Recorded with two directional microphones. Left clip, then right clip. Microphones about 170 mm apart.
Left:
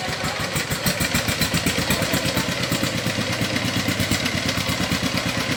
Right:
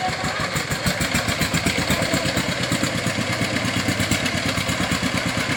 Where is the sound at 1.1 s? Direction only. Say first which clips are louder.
Even; 5° left (ahead or behind).